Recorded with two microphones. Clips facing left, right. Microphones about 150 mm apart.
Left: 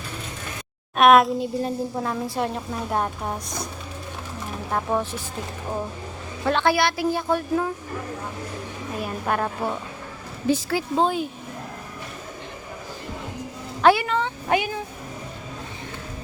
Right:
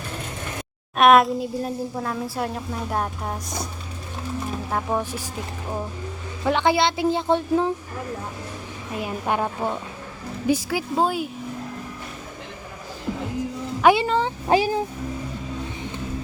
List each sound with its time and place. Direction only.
0.9 s a woman's voice: centre (ahead or behind)
4.7 s speech: 10° right (ahead or behind)
6.4 s a woman's voice: 15° right (ahead or behind)
9.0 s speech: 15° right (ahead or behind)
13.8 s a child's voice: 25° right (ahead or behind)